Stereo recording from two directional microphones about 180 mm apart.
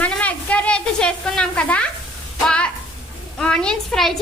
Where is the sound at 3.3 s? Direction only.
5° left (ahead or behind).